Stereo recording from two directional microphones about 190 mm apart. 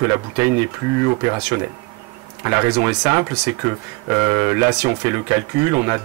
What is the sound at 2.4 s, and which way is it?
Speech, 15° right (ahead or behind).